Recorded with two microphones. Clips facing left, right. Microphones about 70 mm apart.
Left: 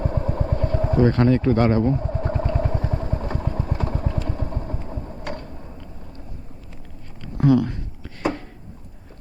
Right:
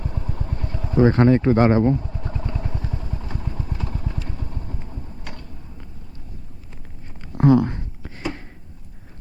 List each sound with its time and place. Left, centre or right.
0.0 s vehicle: left
0.9 s speech: right
2.0 s vehicle: left
7.2 s a sound: right